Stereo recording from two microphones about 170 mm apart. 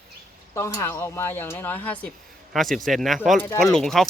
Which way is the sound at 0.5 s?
15° left (ahead or behind).